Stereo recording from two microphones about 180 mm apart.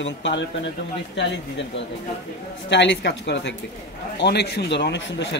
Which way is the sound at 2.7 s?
75° left (ahead or behind).